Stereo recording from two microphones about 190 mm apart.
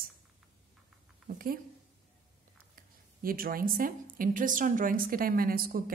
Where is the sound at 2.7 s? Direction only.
50° right (ahead or behind).